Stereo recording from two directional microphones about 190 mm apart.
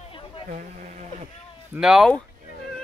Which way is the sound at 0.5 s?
40° right (ahead or behind).